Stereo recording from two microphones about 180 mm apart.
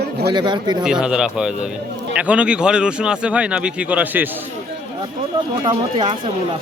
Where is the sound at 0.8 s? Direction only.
5° right (ahead or behind).